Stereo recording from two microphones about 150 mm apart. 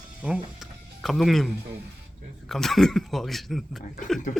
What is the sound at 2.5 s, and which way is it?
Speech, centre (ahead or behind).